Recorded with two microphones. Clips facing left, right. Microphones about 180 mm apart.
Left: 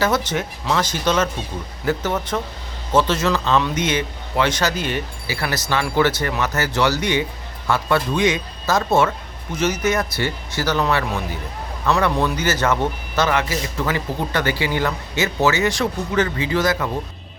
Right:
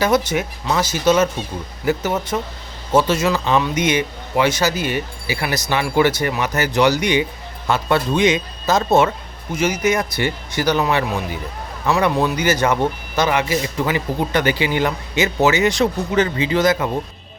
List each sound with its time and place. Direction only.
0.0 s speech: 10° right (ahead or behind)